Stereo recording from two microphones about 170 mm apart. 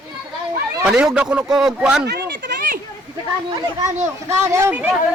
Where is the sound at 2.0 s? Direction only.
75° right (ahead or behind).